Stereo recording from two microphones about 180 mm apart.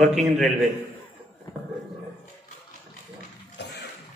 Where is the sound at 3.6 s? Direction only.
70° left (ahead or behind).